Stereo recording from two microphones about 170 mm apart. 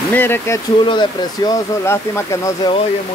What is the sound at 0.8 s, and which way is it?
Speech, 30° left (ahead or behind).